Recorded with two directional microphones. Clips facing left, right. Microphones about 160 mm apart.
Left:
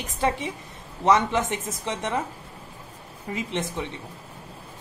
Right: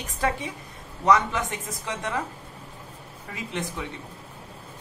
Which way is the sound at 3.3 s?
25° left (ahead or behind).